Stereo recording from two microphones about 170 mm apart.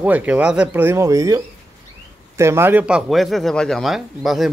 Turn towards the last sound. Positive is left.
turn(degrees=0)  # may be behind; listen again after turning